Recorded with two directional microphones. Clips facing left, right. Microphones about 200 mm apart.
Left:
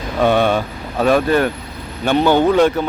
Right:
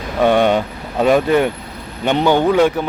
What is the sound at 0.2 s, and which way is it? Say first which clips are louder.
Speech: right 1 dB; 15° right (ahead or behind).